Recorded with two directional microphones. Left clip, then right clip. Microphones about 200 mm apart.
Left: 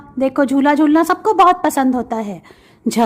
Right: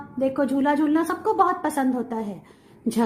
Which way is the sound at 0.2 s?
30° left (ahead or behind).